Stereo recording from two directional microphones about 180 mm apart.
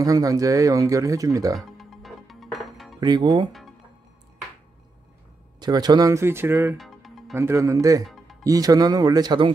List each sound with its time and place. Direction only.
0.0 s speech: 20° right (ahead or behind)
1.6 s music: centre (ahead or behind)
3.0 s speech: 25° right (ahead or behind)
5.6 s speech: 25° right (ahead or behind)
6.8 s music: centre (ahead or behind)
7.3 s speech: 15° right (ahead or behind)
8.0 s music: centre (ahead or behind)
8.5 s speech: 20° right (ahead or behind)